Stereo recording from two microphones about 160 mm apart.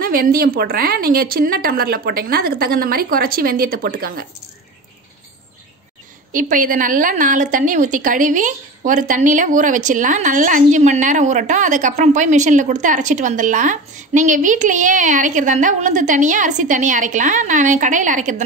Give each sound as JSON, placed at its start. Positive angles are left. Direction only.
{"t": 0.0, "sound": "a woman's voice", "side_deg": -65}
{"t": 6.3, "sound": "a woman's voice", "side_deg": -55}